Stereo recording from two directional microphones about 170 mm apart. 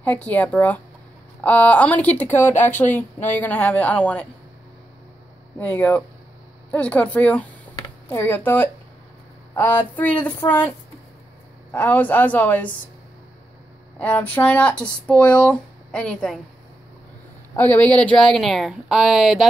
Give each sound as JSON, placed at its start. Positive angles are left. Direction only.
{"t": 0.0, "sound": "speech", "side_deg": 10}
{"t": 2.3, "sound": "speech", "side_deg": 45}
{"t": 2.8, "sound": "speech", "side_deg": 10}
{"t": 5.6, "sound": "speech", "side_deg": 10}
{"t": 11.7, "sound": "speech", "side_deg": 10}
{"t": 13.9, "sound": "speech", "side_deg": 10}
{"t": 17.6, "sound": "speech", "side_deg": 10}